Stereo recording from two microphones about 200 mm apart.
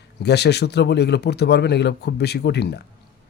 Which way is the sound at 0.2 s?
55° left (ahead or behind).